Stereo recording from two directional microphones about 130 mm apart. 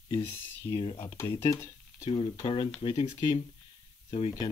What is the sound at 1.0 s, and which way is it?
Speech, 20° left (ahead or behind).